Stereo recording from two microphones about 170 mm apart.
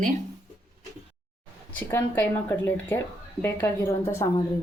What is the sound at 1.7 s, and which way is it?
Speech, 10° left (ahead or behind).